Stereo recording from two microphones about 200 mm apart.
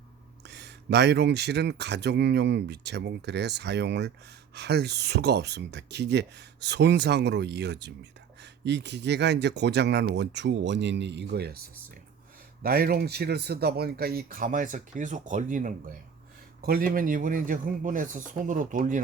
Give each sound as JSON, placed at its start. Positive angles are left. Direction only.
{"t": 0.4, "sound": "speech", "side_deg": -60}
{"t": 12.6, "sound": "speech", "side_deg": -50}